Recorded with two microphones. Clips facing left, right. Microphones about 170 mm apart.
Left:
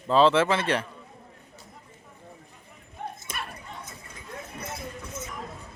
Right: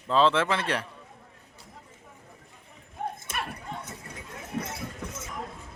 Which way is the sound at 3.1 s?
60° right (ahead or behind).